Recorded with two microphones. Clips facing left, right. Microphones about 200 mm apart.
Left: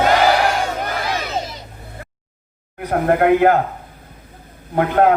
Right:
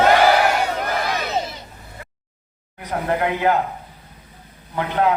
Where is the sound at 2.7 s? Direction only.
55° left (ahead or behind).